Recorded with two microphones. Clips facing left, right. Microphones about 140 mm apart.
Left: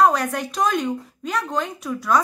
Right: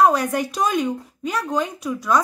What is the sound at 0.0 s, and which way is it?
A woman's voice, 5° right (ahead or behind).